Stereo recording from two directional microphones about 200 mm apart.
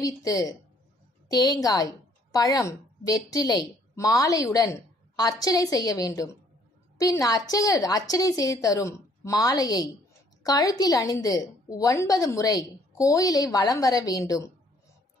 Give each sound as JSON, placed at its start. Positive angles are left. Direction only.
{"t": 0.0, "sound": "a woman's voice", "side_deg": 15}